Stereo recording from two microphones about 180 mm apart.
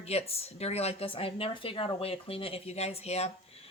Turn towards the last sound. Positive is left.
turn(degrees=35)  # may be behind; listen again after turning